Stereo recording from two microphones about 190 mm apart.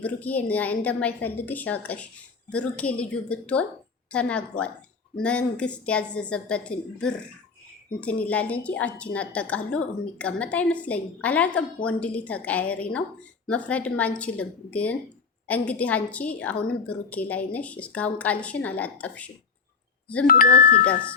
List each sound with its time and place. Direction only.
0.0 s a woman's voice: 10° left (ahead or behind)
20.2 s speech: 45° left (ahead or behind)